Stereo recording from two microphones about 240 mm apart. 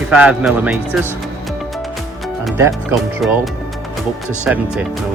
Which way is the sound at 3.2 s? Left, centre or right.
Centre.